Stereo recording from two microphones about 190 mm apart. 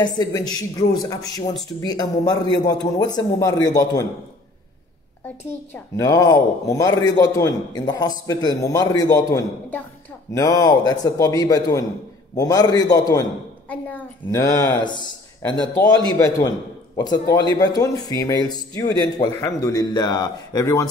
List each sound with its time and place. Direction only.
0.0 s a man's voice: 20° left (ahead or behind)
5.9 s a man's voice: 20° left (ahead or behind)
13.7 s a woman's voice: 10° left (ahead or behind)